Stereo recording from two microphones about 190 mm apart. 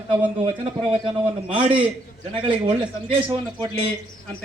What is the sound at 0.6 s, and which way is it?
A man's voice, 30° right (ahead or behind).